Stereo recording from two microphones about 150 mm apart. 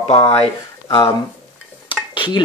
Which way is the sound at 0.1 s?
40° left (ahead or behind).